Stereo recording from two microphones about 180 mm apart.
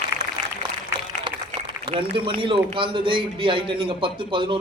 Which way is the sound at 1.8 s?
30° right (ahead or behind).